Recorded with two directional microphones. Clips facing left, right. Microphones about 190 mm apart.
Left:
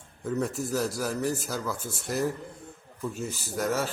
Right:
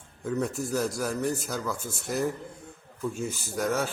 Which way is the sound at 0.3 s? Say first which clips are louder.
Even; centre (ahead or behind).